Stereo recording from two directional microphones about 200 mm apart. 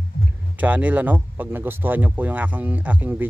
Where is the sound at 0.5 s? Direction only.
10° right (ahead or behind).